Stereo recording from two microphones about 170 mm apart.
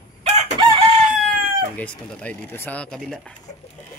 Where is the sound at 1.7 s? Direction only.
10° left (ahead or behind).